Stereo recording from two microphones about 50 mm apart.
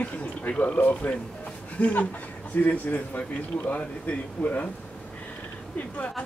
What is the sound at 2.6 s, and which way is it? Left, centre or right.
Speech, left.